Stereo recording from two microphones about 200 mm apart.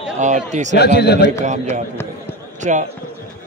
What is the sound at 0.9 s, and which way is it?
Speech, 55° left (ahead or behind).